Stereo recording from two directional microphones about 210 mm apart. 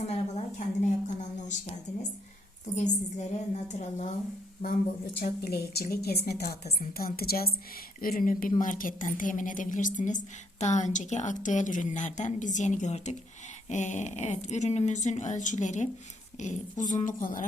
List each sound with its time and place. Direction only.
0.0 s a sound: 30° left (ahead or behind)
2.7 s speech: 35° left (ahead or behind)
5.2 s a woman's voice: 50° left (ahead or behind)